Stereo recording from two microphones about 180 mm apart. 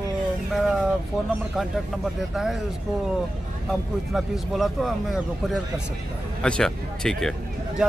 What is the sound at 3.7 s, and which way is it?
Speech, centre (ahead or behind).